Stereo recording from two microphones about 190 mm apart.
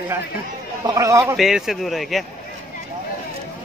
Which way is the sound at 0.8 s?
15° right (ahead or behind).